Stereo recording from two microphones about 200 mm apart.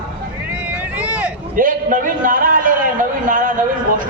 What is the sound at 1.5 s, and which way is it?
A man's voice, 40° right (ahead or behind).